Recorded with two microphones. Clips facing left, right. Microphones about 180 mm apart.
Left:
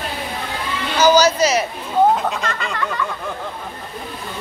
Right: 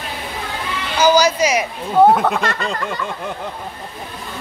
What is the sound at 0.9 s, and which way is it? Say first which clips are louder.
Speech: even; 10° right (ahead or behind).